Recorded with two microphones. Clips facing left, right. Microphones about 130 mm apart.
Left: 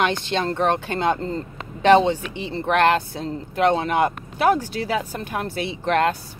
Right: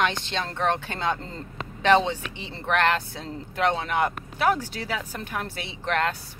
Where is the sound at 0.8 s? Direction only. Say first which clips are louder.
Left 6 dB; 50° left (ahead or behind).